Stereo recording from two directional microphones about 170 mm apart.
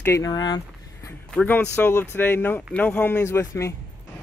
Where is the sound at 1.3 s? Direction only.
10° left (ahead or behind).